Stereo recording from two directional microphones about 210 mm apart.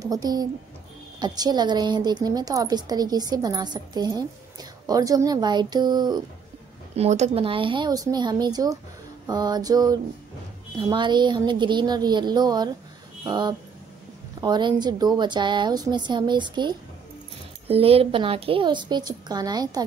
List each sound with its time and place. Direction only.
0.0 s a woman's voice: 20° right (ahead or behind)
7.0 s a woman's voice: 30° right (ahead or behind)
9.3 s a sound: 20° right (ahead or behind)
10.8 s a woman's voice: 20° right (ahead or behind)